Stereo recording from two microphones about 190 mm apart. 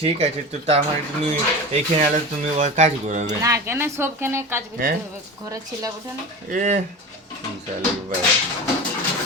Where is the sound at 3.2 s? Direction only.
15° right (ahead or behind).